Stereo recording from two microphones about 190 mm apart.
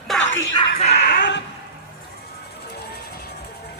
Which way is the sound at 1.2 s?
70° left (ahead or behind).